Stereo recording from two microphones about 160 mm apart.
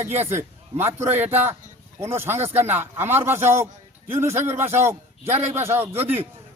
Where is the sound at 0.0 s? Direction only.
45° right (ahead or behind).